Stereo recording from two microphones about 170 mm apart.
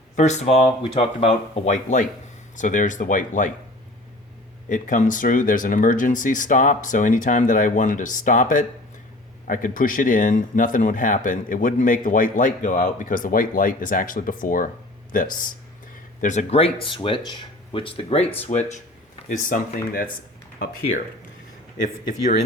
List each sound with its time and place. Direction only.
0.2 s speech: 40° left (ahead or behind)
4.7 s speech: 50° left (ahead or behind)
21.8 s speech: 45° left (ahead or behind)